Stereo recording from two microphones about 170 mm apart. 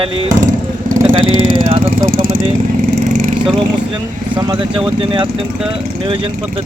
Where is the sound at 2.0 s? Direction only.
55° right (ahead or behind).